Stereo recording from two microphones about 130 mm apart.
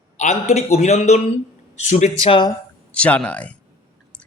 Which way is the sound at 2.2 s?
45° left (ahead or behind).